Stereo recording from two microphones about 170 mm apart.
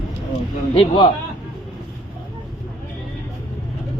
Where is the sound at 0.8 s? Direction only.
30° left (ahead or behind).